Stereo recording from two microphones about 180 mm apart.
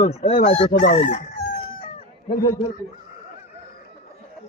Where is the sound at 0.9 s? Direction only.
45° left (ahead or behind).